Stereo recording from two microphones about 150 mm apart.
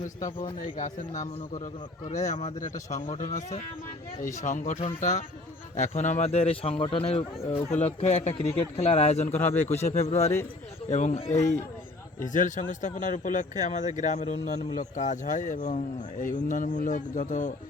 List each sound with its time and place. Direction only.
0.8 s a man's voice: 55° left (ahead or behind)
9.3 s speech: 15° left (ahead or behind)
9.8 s a man's voice: 45° left (ahead or behind)